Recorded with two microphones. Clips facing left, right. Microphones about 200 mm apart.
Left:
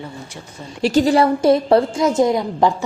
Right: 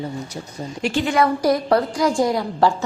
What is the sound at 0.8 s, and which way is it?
A woman's voice, 35° left (ahead or behind).